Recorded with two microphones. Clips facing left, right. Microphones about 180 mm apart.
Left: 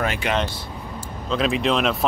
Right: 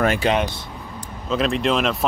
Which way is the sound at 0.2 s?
35° right (ahead or behind).